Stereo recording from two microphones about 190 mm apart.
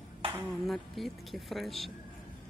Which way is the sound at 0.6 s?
Centre (ahead or behind).